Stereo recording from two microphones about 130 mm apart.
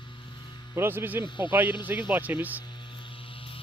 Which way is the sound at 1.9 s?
10° right (ahead or behind).